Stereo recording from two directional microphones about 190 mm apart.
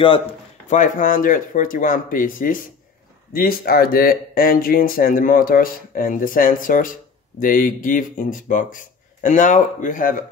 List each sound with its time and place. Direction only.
0.7 s speech: 40° left (ahead or behind)